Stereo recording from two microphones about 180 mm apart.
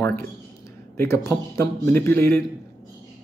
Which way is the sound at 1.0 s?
15° left (ahead or behind).